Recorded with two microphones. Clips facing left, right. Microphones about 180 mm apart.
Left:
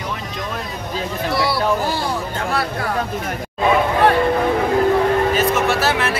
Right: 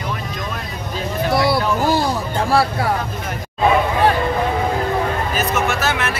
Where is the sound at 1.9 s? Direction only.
40° right (ahead or behind).